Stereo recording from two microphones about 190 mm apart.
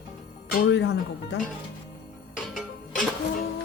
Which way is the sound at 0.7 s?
65° left (ahead or behind).